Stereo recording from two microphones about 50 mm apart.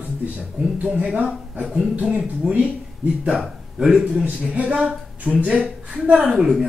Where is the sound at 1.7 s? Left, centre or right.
Right.